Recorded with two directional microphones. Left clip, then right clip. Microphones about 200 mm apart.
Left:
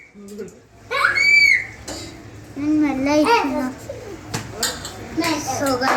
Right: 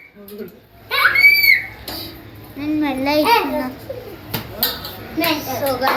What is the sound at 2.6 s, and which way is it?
A child's voice, 20° left (ahead or behind).